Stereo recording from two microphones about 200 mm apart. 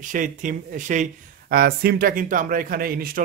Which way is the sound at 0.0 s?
40° right (ahead or behind).